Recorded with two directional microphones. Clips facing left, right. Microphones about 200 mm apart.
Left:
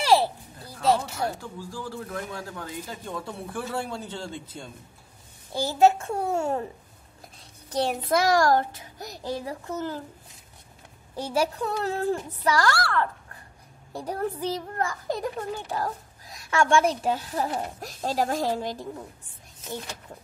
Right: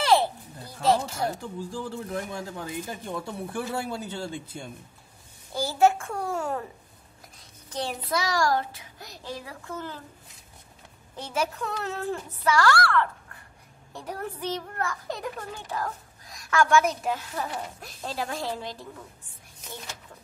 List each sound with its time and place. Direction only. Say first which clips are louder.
1.2 s speech: right 1 dB; 20° right (ahead or behind)
5.7 s a child's voice: left 2 dB; 20° left (ahead or behind)
7.9 s a child's voice: left 7 dB; 50° left (ahead or behind)
11.3 s a child's voice: left 3 dB; 35° left (ahead or behind)
14.0 s a child's voice: left 4 dB; 35° left (ahead or behind)